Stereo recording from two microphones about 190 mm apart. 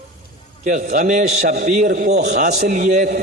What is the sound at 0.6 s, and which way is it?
A man's voice, 40° right (ahead or behind).